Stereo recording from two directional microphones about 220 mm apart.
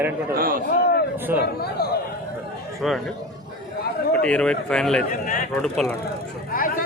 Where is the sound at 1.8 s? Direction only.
45° left (ahead or behind).